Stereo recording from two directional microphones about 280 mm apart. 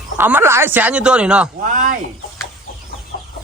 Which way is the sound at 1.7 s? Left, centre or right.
Right.